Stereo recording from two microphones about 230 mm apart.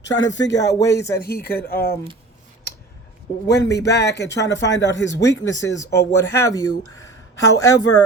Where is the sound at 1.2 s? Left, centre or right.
Left.